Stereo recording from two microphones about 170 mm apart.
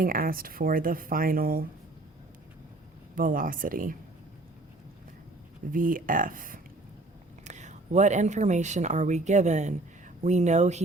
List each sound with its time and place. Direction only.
0.0 s speech: 55° right (ahead or behind)
3.2 s speech: 55° right (ahead or behind)
5.7 s speech: 55° right (ahead or behind)